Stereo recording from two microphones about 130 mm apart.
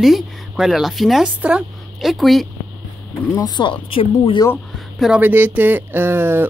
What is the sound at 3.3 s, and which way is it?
Speech, 35° left (ahead or behind).